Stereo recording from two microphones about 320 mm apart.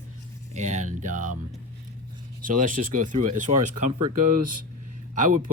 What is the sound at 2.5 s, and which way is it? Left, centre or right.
Speech, right.